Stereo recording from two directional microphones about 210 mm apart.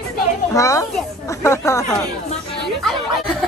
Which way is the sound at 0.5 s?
15° left (ahead or behind).